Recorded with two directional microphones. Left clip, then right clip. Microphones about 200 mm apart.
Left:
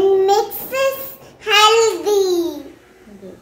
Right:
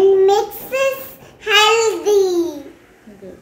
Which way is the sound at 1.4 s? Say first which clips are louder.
Left 1 dB; 5° left (ahead or behind).